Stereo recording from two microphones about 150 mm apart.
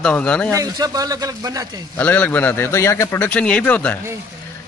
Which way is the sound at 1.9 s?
10° left (ahead or behind).